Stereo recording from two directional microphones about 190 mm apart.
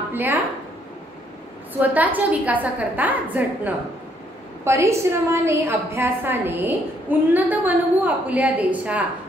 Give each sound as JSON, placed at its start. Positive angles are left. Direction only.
{"t": 0.1, "sound": "speech", "side_deg": -10}
{"t": 1.7, "sound": "a woman's voice", "side_deg": -10}